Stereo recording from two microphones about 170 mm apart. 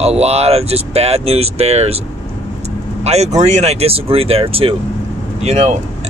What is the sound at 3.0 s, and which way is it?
Speech, 40° right (ahead or behind).